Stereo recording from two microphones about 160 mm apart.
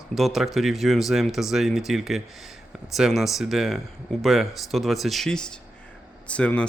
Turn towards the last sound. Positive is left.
turn(degrees=5)  # may be behind; listen again after turning